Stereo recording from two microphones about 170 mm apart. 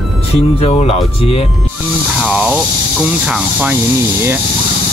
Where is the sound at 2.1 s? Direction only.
5° right (ahead or behind).